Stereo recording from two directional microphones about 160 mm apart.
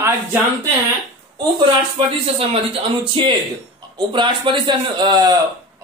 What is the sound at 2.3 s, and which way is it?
Speech, 35° right (ahead or behind).